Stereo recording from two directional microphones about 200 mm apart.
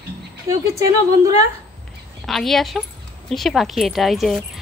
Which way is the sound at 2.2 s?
Centre (ahead or behind).